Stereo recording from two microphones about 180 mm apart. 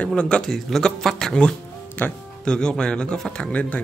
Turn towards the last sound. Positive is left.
turn(degrees=5)  # may be behind; listen again after turning